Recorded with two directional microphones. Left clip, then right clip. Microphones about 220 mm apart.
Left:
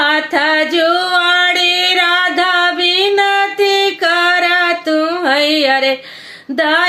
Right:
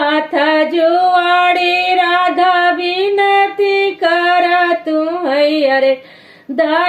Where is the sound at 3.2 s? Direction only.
20° left (ahead or behind).